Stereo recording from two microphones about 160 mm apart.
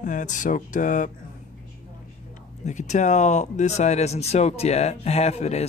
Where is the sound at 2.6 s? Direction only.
45° left (ahead or behind).